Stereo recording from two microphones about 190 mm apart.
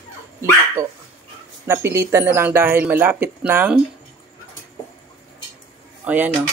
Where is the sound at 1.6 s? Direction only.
15° right (ahead or behind).